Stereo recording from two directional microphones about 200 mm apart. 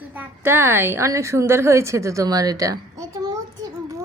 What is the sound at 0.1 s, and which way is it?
A woman's voice, 10° right (ahead or behind).